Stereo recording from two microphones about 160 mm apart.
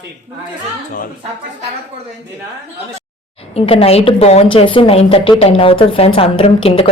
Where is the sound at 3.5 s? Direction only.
40° left (ahead or behind).